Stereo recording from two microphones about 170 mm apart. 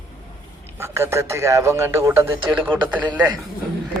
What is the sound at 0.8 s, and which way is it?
A man's voice, 15° right (ahead or behind).